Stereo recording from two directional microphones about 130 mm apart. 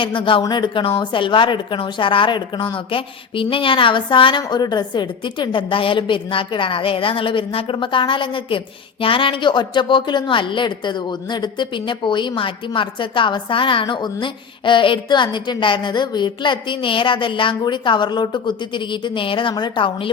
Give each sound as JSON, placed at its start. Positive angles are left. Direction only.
{"t": 0.0, "sound": "a woman's voice", "side_deg": 40}